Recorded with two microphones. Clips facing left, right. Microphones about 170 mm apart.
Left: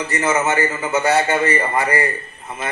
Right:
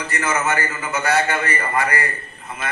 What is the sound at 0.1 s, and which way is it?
A man's voice, 20° left (ahead or behind).